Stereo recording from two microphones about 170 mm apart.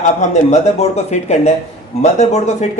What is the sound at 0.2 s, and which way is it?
Speech, 45° left (ahead or behind).